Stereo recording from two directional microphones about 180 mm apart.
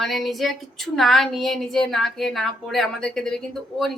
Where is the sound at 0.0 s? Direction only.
Centre (ahead or behind).